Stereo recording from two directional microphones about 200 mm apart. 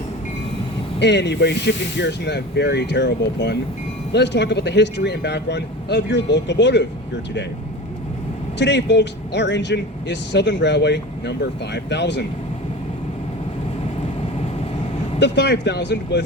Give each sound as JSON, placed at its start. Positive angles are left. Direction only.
{"t": 0.9, "sound": "speech", "side_deg": 60}
{"t": 8.5, "sound": "speech", "side_deg": 60}
{"t": 15.2, "sound": "speech", "side_deg": 60}